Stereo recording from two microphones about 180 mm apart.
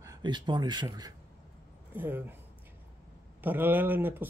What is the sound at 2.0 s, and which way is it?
Speech, 10° right (ahead or behind).